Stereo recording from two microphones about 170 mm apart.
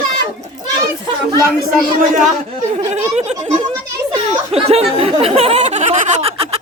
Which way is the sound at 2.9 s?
40° right (ahead or behind).